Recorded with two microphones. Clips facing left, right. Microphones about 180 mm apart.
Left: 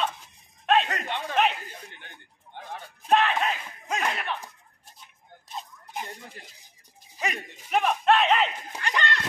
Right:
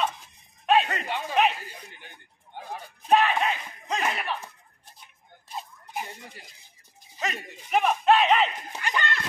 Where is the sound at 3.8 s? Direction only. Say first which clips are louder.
Right 1 dB; centre (ahead or behind).